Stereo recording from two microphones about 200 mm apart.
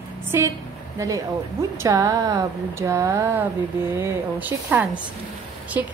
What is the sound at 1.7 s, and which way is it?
A woman's voice, 15° right (ahead or behind).